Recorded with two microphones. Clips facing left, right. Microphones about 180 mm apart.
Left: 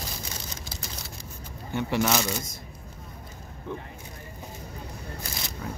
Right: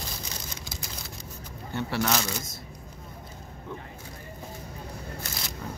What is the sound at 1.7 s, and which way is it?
Speech, 15° left (ahead or behind).